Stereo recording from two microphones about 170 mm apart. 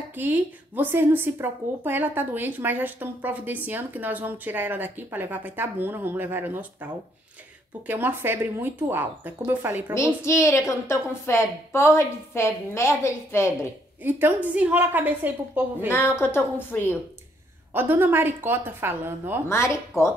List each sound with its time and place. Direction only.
0.1 s speech: 10° right (ahead or behind)
10.2 s a woman's voice: 15° left (ahead or behind)
14.0 s speech: 10° right (ahead or behind)
15.9 s a woman's voice: 15° left (ahead or behind)
17.7 s speech: 10° right (ahead or behind)
19.5 s a woman's voice: 15° left (ahead or behind)